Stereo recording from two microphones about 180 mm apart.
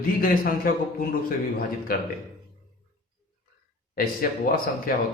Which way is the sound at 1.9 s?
55° left (ahead or behind).